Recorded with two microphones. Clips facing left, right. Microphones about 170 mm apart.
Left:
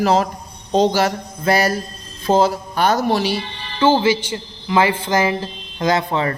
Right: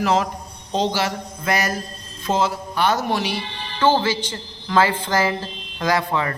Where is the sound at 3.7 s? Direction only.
10° left (ahead or behind).